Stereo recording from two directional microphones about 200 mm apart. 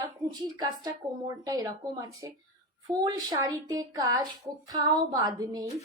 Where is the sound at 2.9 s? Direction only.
20° right (ahead or behind).